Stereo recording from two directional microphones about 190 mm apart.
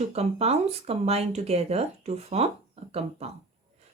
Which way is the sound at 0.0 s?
35° right (ahead or behind).